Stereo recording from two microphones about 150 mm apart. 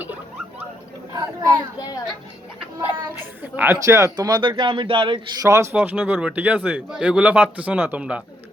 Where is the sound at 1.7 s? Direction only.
25° left (ahead or behind).